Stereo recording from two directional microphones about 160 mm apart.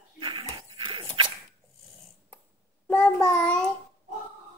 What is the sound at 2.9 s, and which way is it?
Child singing, 10° left (ahead or behind).